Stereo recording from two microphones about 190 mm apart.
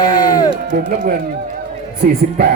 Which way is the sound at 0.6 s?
45° right (ahead or behind).